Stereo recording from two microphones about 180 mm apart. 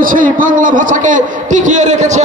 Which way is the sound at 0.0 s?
50° right (ahead or behind).